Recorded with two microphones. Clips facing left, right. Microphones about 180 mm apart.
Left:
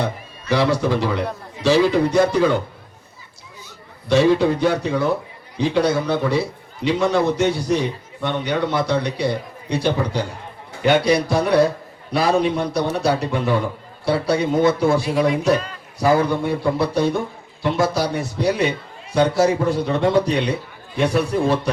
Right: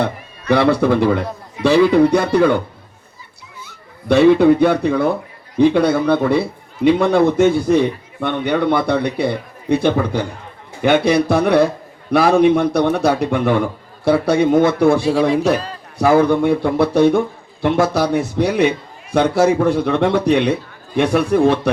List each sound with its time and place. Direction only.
0.0 s a man's voice: 60° right (ahead or behind)
4.1 s a man's voice: 60° right (ahead or behind)
15.0 s speech: 30° right (ahead or behind)
16.0 s a man's voice: 55° right (ahead or behind)